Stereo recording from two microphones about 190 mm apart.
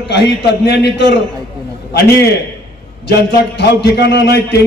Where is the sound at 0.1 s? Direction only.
65° left (ahead or behind).